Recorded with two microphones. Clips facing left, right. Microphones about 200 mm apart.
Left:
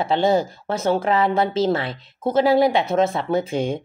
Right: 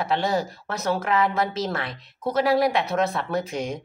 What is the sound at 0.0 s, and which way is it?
A woman's voice, 25° left (ahead or behind).